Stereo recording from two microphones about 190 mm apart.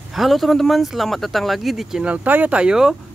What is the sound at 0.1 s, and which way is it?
Speech, centre (ahead or behind).